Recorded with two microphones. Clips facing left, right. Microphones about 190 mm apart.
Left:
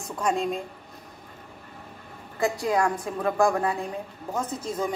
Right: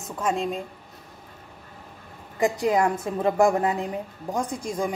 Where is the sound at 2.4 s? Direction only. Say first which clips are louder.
Right 2 dB; 20° right (ahead or behind).